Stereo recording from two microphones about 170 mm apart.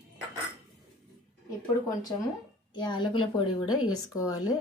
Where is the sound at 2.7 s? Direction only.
25° left (ahead or behind).